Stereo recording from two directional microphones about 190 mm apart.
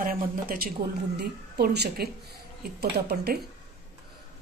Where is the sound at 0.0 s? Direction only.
50° right (ahead or behind).